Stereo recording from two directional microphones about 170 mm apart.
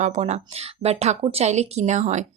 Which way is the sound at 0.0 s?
40° right (ahead or behind).